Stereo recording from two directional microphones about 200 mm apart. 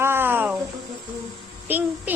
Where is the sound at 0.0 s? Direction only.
10° right (ahead or behind).